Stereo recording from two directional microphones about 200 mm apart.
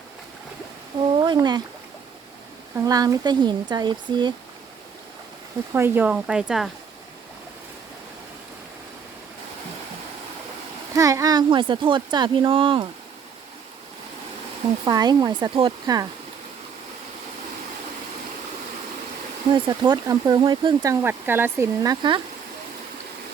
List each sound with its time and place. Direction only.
1.2 s a sound: 20° right (ahead or behind)
2.8 s speech: 20° right (ahead or behind)
5.7 s speech: 10° right (ahead or behind)
10.9 s speech: 15° right (ahead or behind)
14.8 s speech: 20° right (ahead or behind)
19.6 s speech: 20° right (ahead or behind)